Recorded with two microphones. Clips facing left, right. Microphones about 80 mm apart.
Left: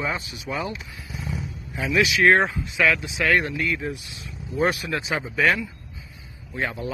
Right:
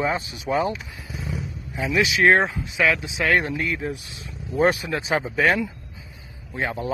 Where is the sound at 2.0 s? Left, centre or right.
Right.